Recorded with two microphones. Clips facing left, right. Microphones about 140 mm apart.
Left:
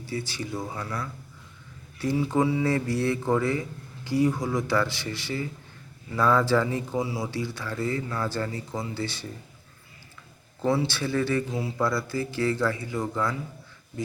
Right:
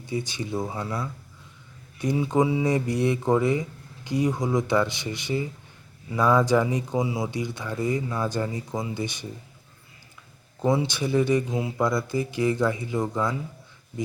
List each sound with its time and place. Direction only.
0.0 s speech: 20° right (ahead or behind)
10.6 s speech: 20° right (ahead or behind)